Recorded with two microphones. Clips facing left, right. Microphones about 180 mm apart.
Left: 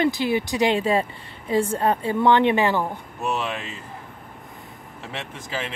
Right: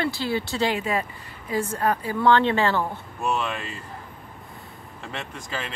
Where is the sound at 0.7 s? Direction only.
30° left (ahead or behind).